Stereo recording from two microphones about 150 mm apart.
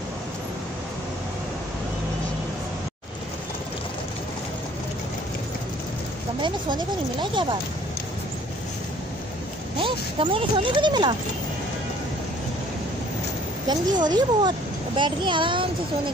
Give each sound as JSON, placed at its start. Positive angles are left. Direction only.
{"t": 6.4, "sound": "speech", "side_deg": -30}
{"t": 9.8, "sound": "speech", "side_deg": -35}
{"t": 13.7, "sound": "speech", "side_deg": -30}